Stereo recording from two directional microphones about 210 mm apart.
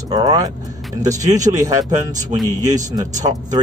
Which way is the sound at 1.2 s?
35° right (ahead or behind).